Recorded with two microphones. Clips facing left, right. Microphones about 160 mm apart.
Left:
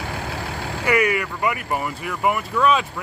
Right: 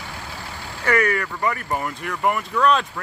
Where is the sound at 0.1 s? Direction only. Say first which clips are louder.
Left 6 dB; 65° left (ahead or behind).